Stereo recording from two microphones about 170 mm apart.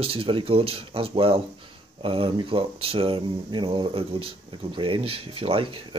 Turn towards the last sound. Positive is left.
turn(degrees=-30)  # may be behind; listen again after turning